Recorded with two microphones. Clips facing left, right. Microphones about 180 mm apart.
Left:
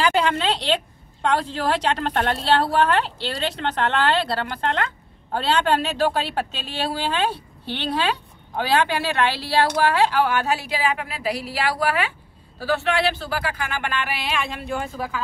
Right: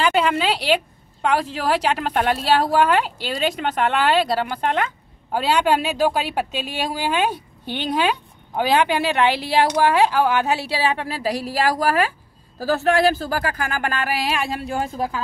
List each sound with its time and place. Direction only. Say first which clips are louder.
0.0 s a sound: right 1 dB; 5° right (ahead or behind)
1.2 s speech: right 1 dB; 10° right (ahead or behind)
10.5 s speech: right 2 dB; 30° right (ahead or behind)